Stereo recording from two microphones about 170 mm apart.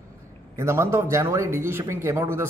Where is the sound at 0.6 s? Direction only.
15° right (ahead or behind).